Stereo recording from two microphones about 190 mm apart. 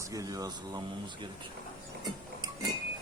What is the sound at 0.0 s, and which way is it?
Speech, 15° right (ahead or behind).